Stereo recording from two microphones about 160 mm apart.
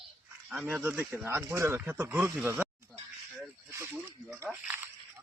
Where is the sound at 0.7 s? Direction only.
15° right (ahead or behind).